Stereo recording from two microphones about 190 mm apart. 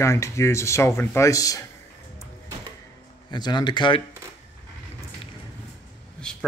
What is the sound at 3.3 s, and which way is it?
Speech, 25° left (ahead or behind).